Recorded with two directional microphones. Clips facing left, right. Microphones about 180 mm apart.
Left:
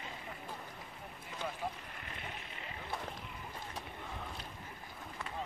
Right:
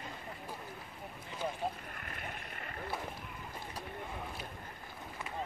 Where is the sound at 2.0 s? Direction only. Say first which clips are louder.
Right 2 dB; 50° right (ahead or behind).